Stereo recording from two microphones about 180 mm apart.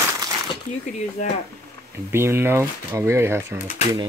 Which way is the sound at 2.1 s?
15° right (ahead or behind).